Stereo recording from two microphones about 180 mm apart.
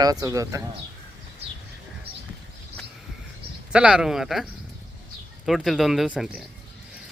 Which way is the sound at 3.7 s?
5° right (ahead or behind).